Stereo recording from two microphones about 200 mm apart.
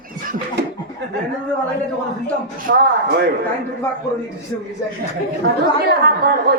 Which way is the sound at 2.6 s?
45° right (ahead or behind).